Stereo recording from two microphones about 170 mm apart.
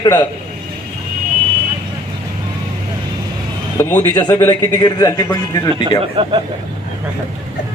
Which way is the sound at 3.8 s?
10° left (ahead or behind).